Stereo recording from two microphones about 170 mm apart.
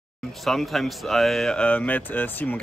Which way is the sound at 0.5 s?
Centre (ahead or behind).